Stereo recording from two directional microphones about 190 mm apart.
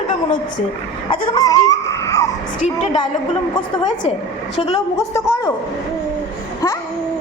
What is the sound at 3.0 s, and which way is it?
Speech, 25° left (ahead or behind).